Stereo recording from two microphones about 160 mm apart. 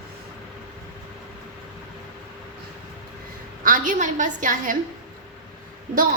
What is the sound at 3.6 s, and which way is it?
A woman's voice, 55° right (ahead or behind).